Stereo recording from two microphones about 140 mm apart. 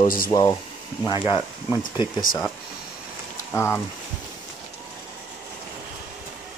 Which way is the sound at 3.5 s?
20° left (ahead or behind).